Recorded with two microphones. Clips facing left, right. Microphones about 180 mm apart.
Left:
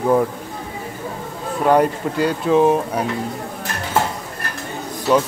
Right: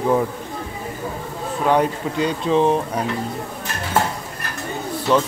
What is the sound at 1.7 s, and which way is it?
Speech, 5° left (ahead or behind).